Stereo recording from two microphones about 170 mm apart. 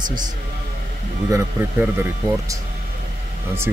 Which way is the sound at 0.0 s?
25° right (ahead or behind).